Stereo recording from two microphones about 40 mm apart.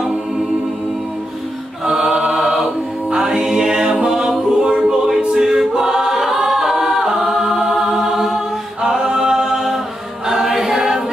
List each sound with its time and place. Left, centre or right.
1.9 s music: centre
4.0 s a capella: right
4.3 s music: centre
4.8 s choir: centre
5.4 s a capella: centre
7.6 s music: centre
8.8 s a capella: centre
10.2 s choir: centre